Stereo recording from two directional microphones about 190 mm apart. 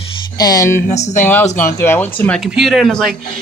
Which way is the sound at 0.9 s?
35° left (ahead or behind).